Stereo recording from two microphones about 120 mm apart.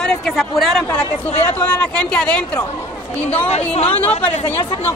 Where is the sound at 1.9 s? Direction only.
10° left (ahead or behind).